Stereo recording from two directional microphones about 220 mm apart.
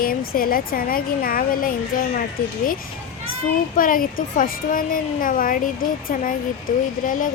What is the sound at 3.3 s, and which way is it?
A child's voice, 40° left (ahead or behind).